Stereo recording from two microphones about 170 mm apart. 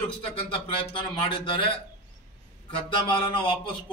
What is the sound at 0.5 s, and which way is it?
A man's voice, 30° left (ahead or behind).